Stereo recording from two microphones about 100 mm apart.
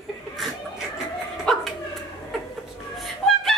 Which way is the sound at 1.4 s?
Centre (ahead or behind).